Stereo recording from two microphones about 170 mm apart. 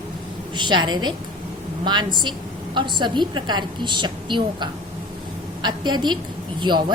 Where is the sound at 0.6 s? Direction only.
25° right (ahead or behind).